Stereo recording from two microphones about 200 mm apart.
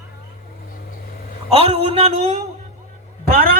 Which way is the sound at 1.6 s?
30° right (ahead or behind).